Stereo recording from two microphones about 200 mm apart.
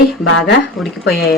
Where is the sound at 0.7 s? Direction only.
Centre (ahead or behind).